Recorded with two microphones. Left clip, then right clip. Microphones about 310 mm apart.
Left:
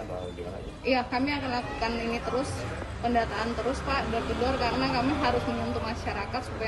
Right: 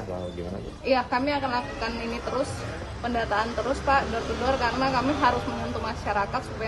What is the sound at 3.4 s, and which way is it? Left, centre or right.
Speech, centre.